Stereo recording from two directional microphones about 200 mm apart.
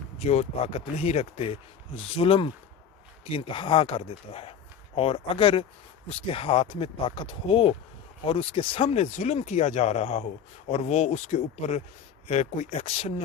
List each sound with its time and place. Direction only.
0.2 s speech: 35° left (ahead or behind)